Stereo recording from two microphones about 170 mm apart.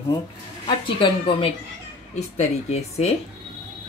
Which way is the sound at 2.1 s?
40° left (ahead or behind).